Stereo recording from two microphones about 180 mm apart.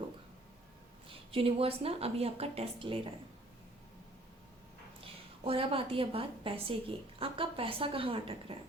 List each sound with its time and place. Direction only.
1.1 s speech: 30° right (ahead or behind)
4.9 s a woman's voice: 30° right (ahead or behind)